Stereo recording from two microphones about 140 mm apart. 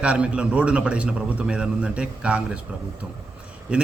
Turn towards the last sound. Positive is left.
turn(degrees=-5)  # may be behind; listen again after turning